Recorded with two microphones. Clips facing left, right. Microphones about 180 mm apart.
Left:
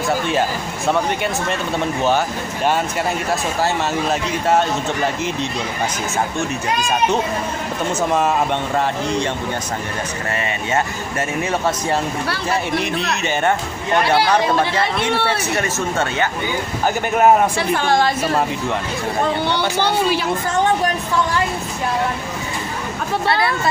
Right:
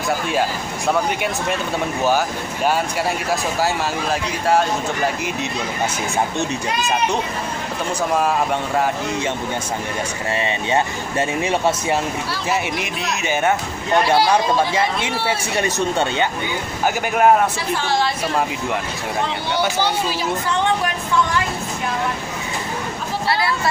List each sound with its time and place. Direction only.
2.0 s speech: 5° right (ahead or behind)
10.3 s speech: 20° right (ahead or behind)
13.1 s speech: 5° right (ahead or behind)
15.5 s speech: 15° right (ahead or behind)
17.6 s a woman's voice: 55° left (ahead or behind)
19.8 s speech: 60° left (ahead or behind)
20.4 s a sound: 45° left (ahead or behind)